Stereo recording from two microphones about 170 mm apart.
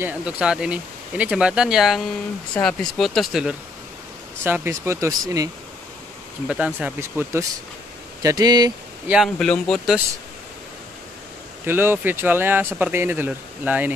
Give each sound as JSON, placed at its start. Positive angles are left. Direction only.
{"t": 0.0, "sound": "speech", "side_deg": -5}
{"t": 6.4, "sound": "speech", "side_deg": -5}
{"t": 9.0, "sound": "speech", "side_deg": -5}
{"t": 11.6, "sound": "speech", "side_deg": -10}